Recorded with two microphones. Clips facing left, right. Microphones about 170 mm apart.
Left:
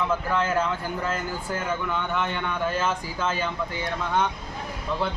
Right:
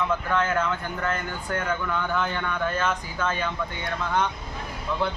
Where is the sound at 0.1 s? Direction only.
5° left (ahead or behind).